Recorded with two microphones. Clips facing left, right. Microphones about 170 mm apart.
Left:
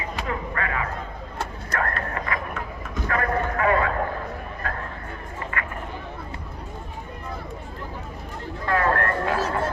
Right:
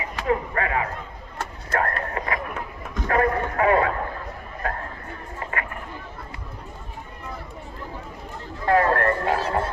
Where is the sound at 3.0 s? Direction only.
30° right (ahead or behind).